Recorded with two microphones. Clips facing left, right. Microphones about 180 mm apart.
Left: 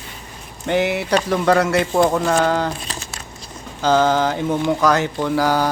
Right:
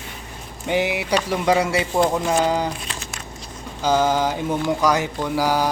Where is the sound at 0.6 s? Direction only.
10° right (ahead or behind).